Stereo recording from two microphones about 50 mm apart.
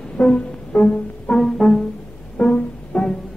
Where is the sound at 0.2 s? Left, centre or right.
Left.